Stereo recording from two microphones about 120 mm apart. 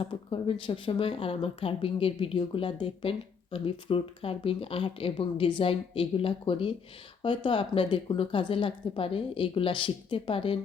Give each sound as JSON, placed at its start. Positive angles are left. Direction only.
{"t": 0.1, "sound": "speech", "side_deg": 45}